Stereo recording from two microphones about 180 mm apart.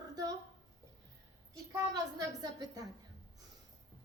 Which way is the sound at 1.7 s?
20° right (ahead or behind).